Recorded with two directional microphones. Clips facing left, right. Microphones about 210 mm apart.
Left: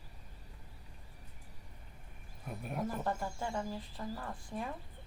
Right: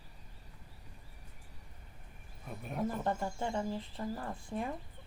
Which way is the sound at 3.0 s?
20° right (ahead or behind).